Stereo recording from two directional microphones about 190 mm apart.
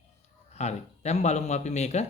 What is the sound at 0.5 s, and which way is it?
Speech, 35° left (ahead or behind).